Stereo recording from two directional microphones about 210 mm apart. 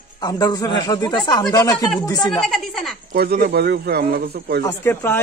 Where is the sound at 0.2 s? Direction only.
20° left (ahead or behind).